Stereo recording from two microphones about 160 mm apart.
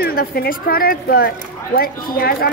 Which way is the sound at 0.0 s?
70° left (ahead or behind).